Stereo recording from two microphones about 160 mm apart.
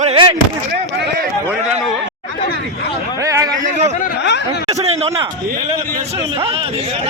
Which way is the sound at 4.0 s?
75° left (ahead or behind).